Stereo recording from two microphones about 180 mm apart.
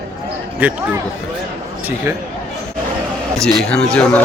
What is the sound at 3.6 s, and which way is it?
Speech, 5° left (ahead or behind).